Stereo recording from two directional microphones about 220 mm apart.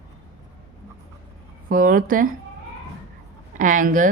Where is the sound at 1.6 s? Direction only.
40° right (ahead or behind).